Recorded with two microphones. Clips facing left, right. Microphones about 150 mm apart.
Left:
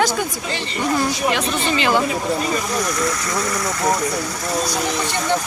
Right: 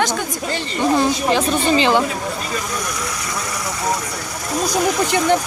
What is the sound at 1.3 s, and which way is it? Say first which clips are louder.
Speech: right 4 dB; 30° right (ahead or behind).